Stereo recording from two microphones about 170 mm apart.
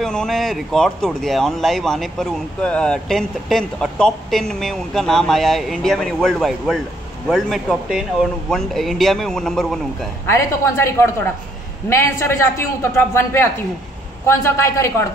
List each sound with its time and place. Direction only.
0.0 s speech: 5° left (ahead or behind)
10.2 s a woman's voice: 15° left (ahead or behind)